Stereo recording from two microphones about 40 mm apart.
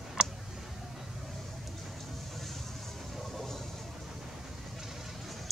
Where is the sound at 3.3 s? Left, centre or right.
Centre.